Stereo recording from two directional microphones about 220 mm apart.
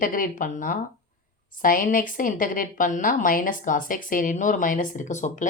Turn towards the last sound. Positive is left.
turn(degrees=35)  # may be behind; listen again after turning